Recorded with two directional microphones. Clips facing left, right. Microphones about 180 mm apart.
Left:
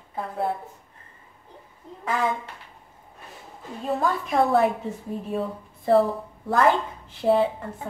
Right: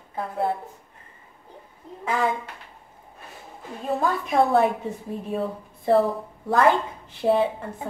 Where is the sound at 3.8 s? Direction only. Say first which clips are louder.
Even; centre (ahead or behind).